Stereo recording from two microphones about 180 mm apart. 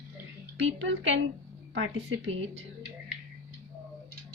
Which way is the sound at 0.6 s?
90° right.